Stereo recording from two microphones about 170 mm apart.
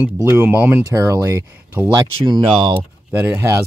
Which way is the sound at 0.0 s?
15° right (ahead or behind).